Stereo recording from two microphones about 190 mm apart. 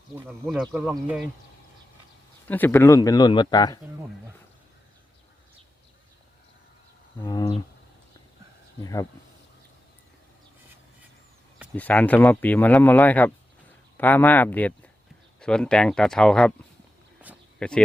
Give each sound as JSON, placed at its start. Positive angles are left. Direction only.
{"t": 0.4, "sound": "speech", "side_deg": 0}
{"t": 2.5, "sound": "speech", "side_deg": 10}
{"t": 7.2, "sound": "speech", "side_deg": 15}
{"t": 8.8, "sound": "speech", "side_deg": 20}
{"t": 11.7, "sound": "speech", "side_deg": 5}
{"t": 17.6, "sound": "speech", "side_deg": 5}